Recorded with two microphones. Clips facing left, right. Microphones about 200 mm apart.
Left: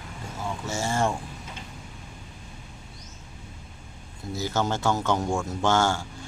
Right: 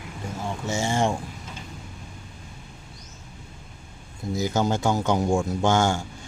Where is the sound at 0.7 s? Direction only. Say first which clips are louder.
Right 2 dB; 15° right (ahead or behind).